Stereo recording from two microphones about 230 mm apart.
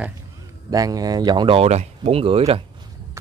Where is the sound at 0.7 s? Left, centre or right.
Centre.